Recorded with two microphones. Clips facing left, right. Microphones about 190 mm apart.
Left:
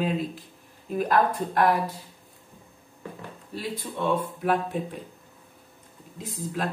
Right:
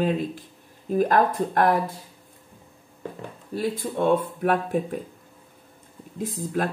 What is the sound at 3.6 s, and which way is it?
Speech, 50° right (ahead or behind).